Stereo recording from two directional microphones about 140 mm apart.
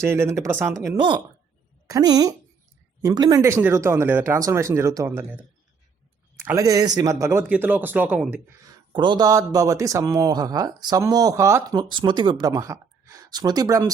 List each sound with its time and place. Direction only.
0.0 s speech: 20° right (ahead or behind)
0.9 s a man's voice: 35° right (ahead or behind); by 8.4 s 10° right (ahead or behind)
8.6 s speech: 35° right (ahead or behind)